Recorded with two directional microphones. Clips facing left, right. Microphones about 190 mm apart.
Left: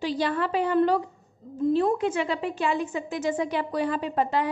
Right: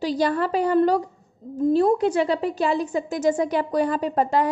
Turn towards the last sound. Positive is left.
turn(degrees=-40)  # may be behind; listen again after turning